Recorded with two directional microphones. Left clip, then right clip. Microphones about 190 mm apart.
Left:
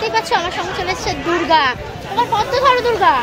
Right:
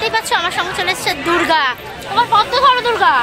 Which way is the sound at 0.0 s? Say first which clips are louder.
Right 1 dB; 5° right (ahead or behind).